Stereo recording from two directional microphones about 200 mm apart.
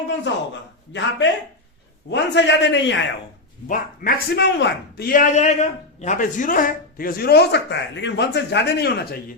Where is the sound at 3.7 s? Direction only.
45° left (ahead or behind).